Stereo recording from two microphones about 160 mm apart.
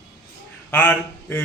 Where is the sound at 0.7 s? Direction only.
10° left (ahead or behind).